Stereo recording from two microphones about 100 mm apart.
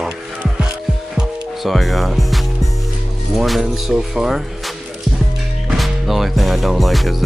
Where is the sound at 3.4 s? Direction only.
5° right (ahead or behind).